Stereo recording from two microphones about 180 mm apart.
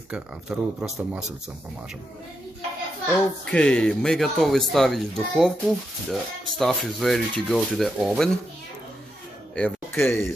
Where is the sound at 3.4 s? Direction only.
5° left (ahead or behind).